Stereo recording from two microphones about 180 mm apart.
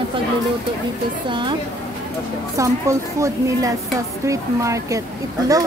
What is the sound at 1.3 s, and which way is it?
Speech, 25° right (ahead or behind).